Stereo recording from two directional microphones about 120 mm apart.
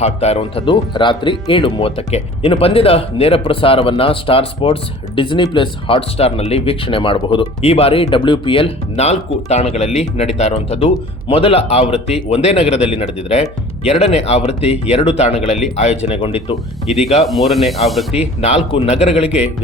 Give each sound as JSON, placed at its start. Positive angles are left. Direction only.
{"t": 0.0, "sound": "speech", "side_deg": 60}
{"t": 17.2, "sound": "speech", "side_deg": 0}
{"t": 18.3, "sound": "speech", "side_deg": 60}